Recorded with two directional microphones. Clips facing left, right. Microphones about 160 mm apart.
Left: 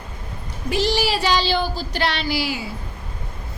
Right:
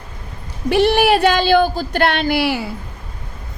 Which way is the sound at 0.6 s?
60° right (ahead or behind).